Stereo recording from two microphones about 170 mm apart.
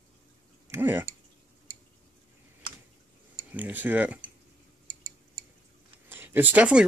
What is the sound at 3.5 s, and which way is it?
Speech, 10° right (ahead or behind).